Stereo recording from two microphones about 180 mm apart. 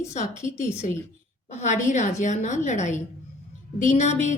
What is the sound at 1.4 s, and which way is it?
A woman's voice, 40° left (ahead or behind).